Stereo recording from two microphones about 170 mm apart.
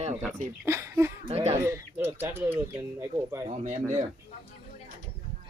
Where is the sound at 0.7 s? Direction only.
15° right (ahead or behind).